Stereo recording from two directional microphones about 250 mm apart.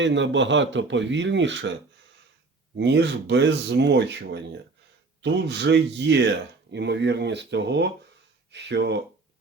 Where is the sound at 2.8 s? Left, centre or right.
Right.